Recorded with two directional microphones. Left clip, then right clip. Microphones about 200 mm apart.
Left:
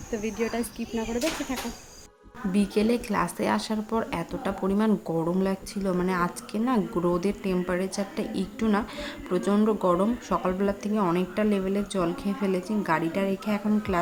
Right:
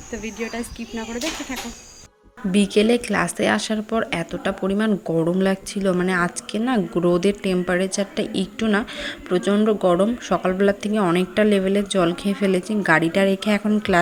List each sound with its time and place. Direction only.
0.1 s speech: centre (ahead or behind)
2.5 s speech: 15° right (ahead or behind)